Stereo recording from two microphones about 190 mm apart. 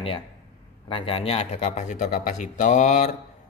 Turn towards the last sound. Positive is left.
turn(degrees=40)  # may be behind; listen again after turning